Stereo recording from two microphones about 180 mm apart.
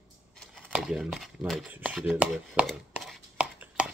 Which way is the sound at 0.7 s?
5° right (ahead or behind).